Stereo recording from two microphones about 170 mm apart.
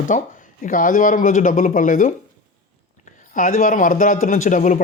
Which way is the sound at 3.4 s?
55° left (ahead or behind).